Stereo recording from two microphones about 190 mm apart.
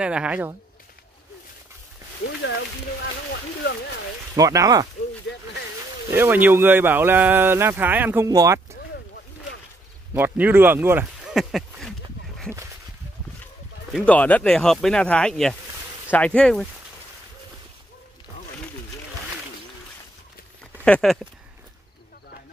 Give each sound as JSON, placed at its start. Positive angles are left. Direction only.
{"t": 0.0, "sound": "speech", "side_deg": -5}
{"t": 4.4, "sound": "speech", "side_deg": -20}
{"t": 6.1, "sound": "speech", "side_deg": -10}
{"t": 10.1, "sound": "speech", "side_deg": -10}
{"t": 14.0, "sound": "speech", "side_deg": 10}
{"t": 20.8, "sound": "speech", "side_deg": 5}